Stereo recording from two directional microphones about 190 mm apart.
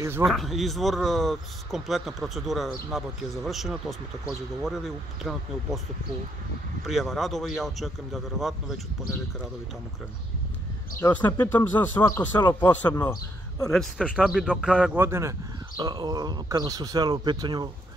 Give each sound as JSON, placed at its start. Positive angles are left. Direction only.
{"t": 0.0, "sound": "speech", "side_deg": -10}
{"t": 0.3, "sound": "speech", "side_deg": 0}
{"t": 6.8, "sound": "speech", "side_deg": 0}
{"t": 11.0, "sound": "speech", "side_deg": 15}
{"t": 13.7, "sound": "speech", "side_deg": 0}
{"t": 15.0, "sound": "speech", "side_deg": -15}